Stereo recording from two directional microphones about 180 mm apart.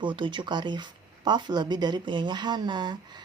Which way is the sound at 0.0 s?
25° right (ahead or behind).